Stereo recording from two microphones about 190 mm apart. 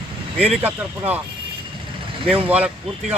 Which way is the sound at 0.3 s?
5° right (ahead or behind).